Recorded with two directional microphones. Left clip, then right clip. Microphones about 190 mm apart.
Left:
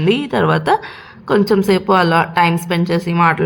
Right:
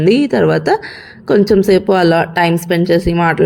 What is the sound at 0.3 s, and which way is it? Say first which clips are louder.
Speech: right 2 dB; 10° right (ahead or behind).